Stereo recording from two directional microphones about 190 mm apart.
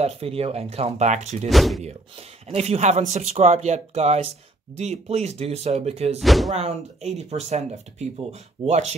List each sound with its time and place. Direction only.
0.0 s speech: 30° right (ahead or behind)
1.5 s speech: centre (ahead or behind)
2.4 s speech: 35° right (ahead or behind)
6.1 s speech: centre (ahead or behind)
6.5 s speech: 35° right (ahead or behind)